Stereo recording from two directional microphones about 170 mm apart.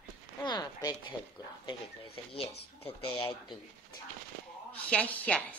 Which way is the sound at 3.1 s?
30° left (ahead or behind).